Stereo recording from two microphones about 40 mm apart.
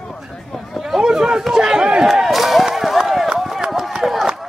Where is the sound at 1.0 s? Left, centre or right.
Centre.